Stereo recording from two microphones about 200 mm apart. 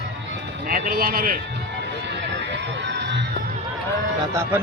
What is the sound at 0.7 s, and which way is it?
Speech, 45° right (ahead or behind).